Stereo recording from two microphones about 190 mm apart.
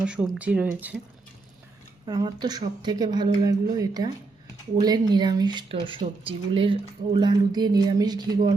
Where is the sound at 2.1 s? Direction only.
20° right (ahead or behind).